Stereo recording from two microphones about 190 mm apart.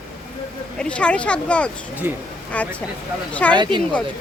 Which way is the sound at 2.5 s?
5° left (ahead or behind).